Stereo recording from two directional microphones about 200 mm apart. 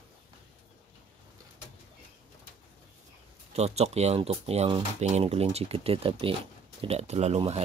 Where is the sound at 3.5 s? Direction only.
30° right (ahead or behind).